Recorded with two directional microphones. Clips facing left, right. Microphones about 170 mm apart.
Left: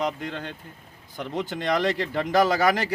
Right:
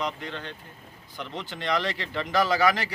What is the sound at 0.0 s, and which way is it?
Speech, 45° left (ahead or behind).